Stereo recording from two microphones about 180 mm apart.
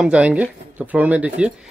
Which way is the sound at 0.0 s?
5° right (ahead or behind).